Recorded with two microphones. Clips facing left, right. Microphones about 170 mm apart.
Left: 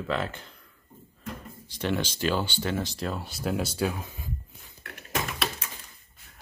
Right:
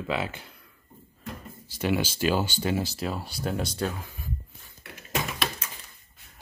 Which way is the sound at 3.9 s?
20° left (ahead or behind).